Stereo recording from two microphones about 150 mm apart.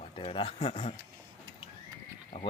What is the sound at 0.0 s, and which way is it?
Speech, 35° left (ahead or behind).